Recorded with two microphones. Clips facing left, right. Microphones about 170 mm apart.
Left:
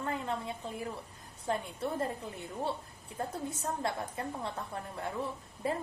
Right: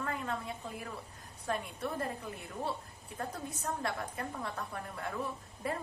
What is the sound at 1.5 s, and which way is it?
A woman's voice, 25° left (ahead or behind).